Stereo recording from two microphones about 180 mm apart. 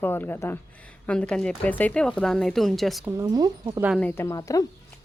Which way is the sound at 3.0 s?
20° right (ahead or behind).